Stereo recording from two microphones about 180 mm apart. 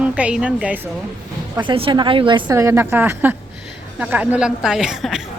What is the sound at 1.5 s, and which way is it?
A woman's voice, 30° right (ahead or behind).